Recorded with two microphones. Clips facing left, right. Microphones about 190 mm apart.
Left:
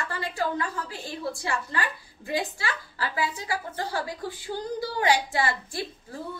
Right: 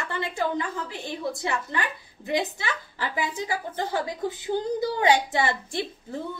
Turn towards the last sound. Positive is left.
turn(degrees=-25)  # may be behind; listen again after turning